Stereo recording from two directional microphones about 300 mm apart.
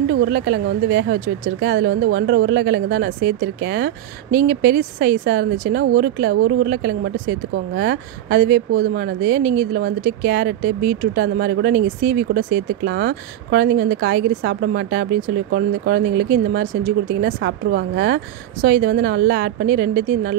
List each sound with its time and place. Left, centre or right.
0.2 s speech: right